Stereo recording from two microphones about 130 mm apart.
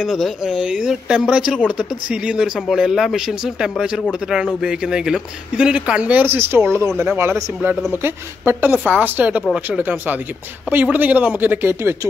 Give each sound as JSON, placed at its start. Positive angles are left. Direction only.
{"t": 0.0, "sound": "speech", "side_deg": -5}